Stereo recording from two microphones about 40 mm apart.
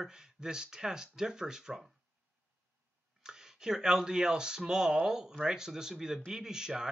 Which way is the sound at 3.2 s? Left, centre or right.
Centre.